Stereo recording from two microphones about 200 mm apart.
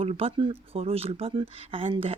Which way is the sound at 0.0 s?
30° right (ahead or behind).